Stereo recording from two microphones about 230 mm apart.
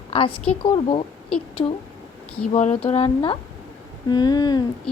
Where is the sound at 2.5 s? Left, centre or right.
Left.